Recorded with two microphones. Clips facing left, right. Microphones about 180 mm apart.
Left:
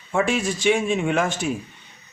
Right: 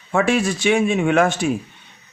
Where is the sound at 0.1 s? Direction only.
70° right (ahead or behind).